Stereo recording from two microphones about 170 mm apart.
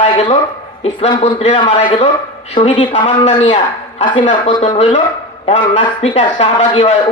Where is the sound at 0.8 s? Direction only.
30° left (ahead or behind).